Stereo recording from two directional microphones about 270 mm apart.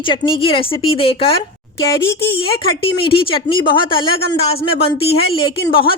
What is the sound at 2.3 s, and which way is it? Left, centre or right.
A woman's voice, centre.